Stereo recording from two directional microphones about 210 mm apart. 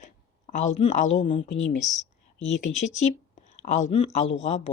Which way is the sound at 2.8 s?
35° left (ahead or behind).